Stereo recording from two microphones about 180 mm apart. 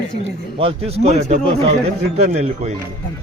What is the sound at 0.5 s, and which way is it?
A man's voice, 35° right (ahead or behind).